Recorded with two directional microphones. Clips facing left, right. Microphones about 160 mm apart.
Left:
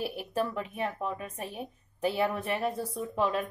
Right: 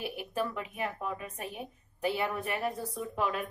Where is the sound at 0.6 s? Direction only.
35° left (ahead or behind).